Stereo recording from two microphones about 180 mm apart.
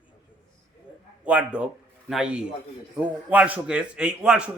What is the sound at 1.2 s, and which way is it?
A man's voice, 5° right (ahead or behind).